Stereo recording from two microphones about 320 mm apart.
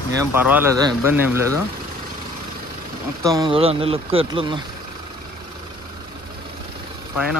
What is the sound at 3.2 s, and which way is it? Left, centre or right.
Speech, centre.